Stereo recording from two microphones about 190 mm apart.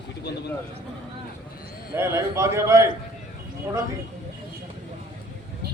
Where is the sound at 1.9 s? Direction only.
15° right (ahead or behind).